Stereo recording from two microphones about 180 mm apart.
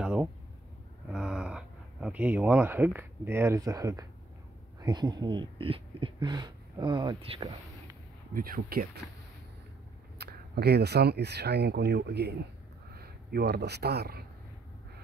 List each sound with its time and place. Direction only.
0.0 s speech: 5° right (ahead or behind); by 7.4 s 30° right (ahead or behind)
8.3 s speech: 50° right (ahead or behind)
10.1 s speech: 65° right (ahead or behind)